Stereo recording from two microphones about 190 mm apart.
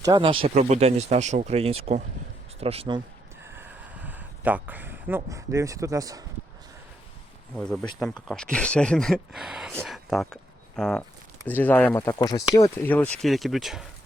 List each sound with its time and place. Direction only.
0.0 s speech: 25° right (ahead or behind)
3.4 s a sound: 10° right (ahead or behind)
7.5 s speech: 5° left (ahead or behind)